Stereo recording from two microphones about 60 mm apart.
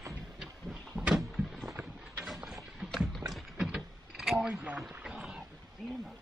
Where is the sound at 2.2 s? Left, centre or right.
Centre.